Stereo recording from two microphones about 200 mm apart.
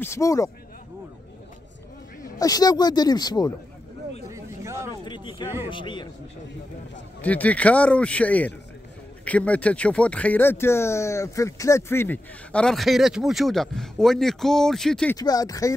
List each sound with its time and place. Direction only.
0.0 s speech: 15° left (ahead or behind)
2.3 s speech: 20° left (ahead or behind)
4.3 s a sound: 15° right (ahead or behind)
5.0 s speech: 25° left (ahead or behind)
7.2 s speech: 5° left (ahead or behind)
15.1 s speech: 20° left (ahead or behind)